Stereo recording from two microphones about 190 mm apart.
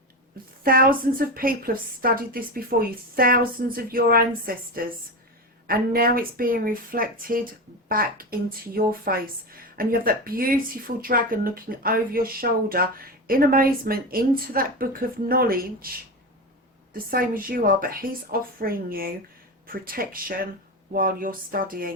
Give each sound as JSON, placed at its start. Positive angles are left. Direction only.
{"t": 0.6, "sound": "speech", "side_deg": -50}
{"t": 5.6, "sound": "speech", "side_deg": -50}